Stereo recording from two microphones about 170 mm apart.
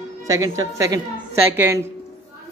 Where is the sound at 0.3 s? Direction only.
20° right (ahead or behind).